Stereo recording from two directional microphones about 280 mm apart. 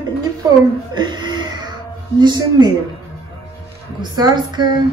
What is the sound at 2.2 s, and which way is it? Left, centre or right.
Speech, centre.